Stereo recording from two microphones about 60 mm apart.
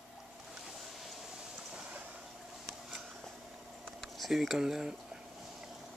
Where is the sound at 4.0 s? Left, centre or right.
Centre.